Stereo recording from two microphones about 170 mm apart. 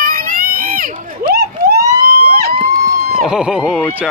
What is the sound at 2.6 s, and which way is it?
Run, 60° right (ahead or behind).